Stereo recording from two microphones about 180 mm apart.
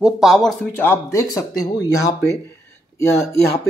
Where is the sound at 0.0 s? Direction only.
Centre (ahead or behind).